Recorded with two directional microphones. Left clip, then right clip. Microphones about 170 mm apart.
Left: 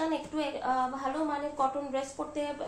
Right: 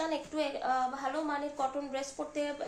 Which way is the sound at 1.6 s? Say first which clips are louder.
Left 4 dB; 35° right (ahead or behind).